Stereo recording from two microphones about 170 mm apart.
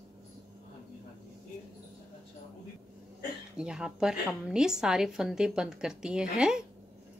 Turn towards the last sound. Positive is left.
turn(degrees=-5)  # may be behind; listen again after turning